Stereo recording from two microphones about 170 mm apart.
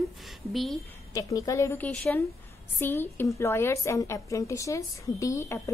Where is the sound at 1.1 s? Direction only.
20° left (ahead or behind).